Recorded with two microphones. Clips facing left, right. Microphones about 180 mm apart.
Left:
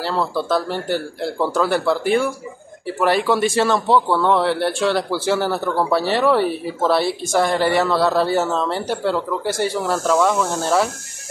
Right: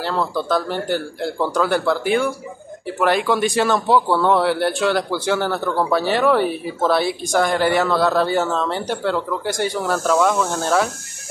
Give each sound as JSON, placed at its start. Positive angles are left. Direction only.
{"t": 0.0, "sound": "speech", "side_deg": 5}